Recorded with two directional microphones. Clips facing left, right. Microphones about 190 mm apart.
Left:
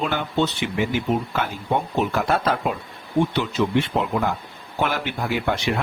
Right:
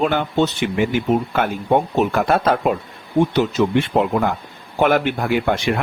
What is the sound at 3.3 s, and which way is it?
Speech, 45° right (ahead or behind).